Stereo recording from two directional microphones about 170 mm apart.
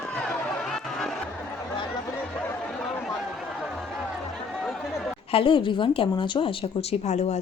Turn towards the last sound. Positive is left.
turn(degrees=40)  # may be behind; listen again after turning